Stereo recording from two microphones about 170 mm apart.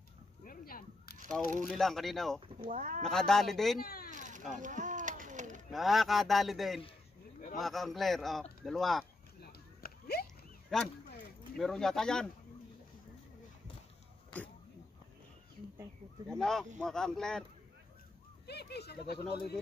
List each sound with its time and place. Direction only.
0.5 s whip: 60° left (ahead or behind)
1.1 s a sound: 50° right (ahead or behind)
1.6 s speech: centre (ahead or behind)
2.6 s speech: 45° right (ahead or behind)
3.0 s speech: 5° left (ahead or behind)
3.8 s a sound: 60° left (ahead or behind)
4.1 s a sound: 45° right (ahead or behind)
5.7 s speech: centre (ahead or behind)
9.4 s a sound: 65° left (ahead or behind)
10.7 s speech: 5° left (ahead or behind)
16.3 s speech: 5° left (ahead or behind)
18.5 s speech: 75° left (ahead or behind)